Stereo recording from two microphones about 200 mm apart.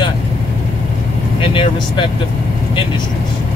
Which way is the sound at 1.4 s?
25° left (ahead or behind).